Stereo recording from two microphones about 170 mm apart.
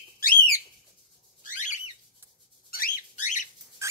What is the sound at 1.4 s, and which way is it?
Bird, 45° left (ahead or behind).